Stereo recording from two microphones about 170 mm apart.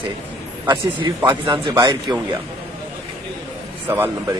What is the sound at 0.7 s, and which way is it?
Speech, 30° right (ahead or behind).